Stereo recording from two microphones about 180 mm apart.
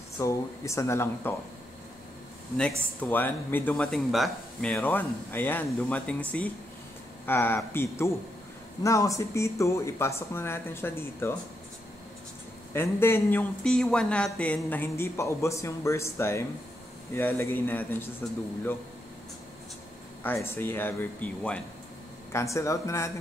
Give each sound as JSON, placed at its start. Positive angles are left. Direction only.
{"t": 0.2, "sound": "speech", "side_deg": 15}
{"t": 3.0, "sound": "speech", "side_deg": 10}
{"t": 12.7, "sound": "speech", "side_deg": 15}
{"t": 20.2, "sound": "speech", "side_deg": 10}